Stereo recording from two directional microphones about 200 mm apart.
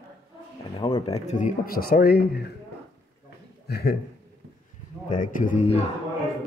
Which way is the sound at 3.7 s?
50° left (ahead or behind).